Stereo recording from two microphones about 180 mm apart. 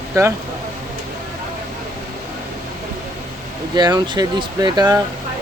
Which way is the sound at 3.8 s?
25° right (ahead or behind).